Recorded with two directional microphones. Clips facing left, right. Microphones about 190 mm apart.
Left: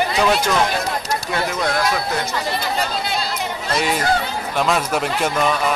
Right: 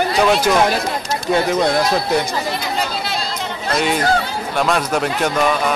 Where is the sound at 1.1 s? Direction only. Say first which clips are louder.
Right 9 dB; 25° right (ahead or behind).